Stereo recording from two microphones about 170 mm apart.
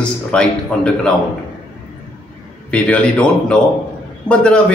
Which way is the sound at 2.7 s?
5° left (ahead or behind).